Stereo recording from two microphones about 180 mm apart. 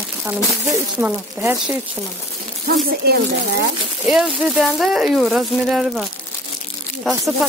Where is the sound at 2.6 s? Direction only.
60° right (ahead or behind).